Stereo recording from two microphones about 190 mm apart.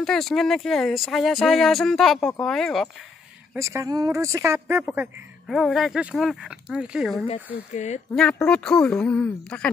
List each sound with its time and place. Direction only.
0.0 s speech: centre (ahead or behind)
3.5 s speech: 15° right (ahead or behind)
7.7 s speech: 40° left (ahead or behind)
8.1 s speech: 5° left (ahead or behind)